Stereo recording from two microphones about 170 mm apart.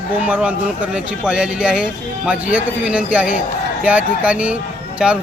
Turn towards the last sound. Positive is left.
turn(degrees=-5)  # may be behind; listen again after turning